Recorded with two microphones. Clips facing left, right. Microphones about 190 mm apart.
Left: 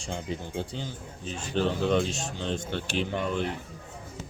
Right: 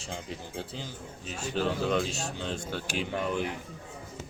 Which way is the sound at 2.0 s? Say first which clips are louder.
Left 1 dB; 40° right (ahead or behind).